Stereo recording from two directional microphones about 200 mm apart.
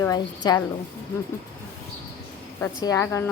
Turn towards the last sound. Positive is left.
turn(degrees=15)  # may be behind; listen again after turning